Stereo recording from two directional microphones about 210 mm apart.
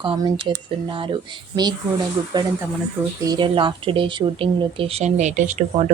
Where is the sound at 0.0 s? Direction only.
25° right (ahead or behind).